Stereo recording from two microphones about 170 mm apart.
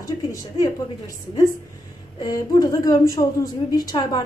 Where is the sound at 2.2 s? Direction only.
20° left (ahead or behind).